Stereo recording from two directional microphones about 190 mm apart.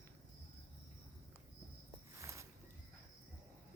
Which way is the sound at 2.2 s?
15° right (ahead or behind).